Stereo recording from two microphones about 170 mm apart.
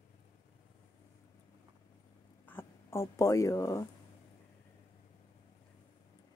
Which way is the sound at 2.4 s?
10° left (ahead or behind).